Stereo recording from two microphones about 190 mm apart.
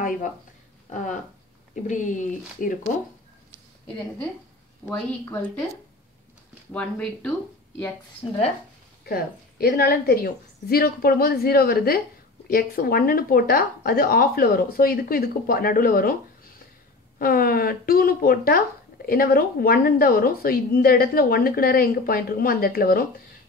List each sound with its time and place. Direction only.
1.9 s speech: 40° left (ahead or behind)
4.8 s speech: 5° left (ahead or behind)
6.7 s speech: 5° left (ahead or behind)
8.2 s speech: 25° left (ahead or behind)
9.0 s speech: 55° left (ahead or behind)